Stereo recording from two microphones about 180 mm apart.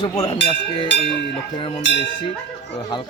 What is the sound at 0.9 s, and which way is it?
Speech, 80° left.